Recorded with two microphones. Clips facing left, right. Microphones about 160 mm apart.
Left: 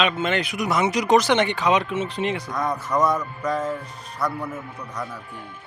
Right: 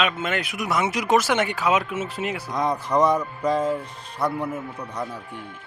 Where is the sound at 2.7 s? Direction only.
30° right (ahead or behind).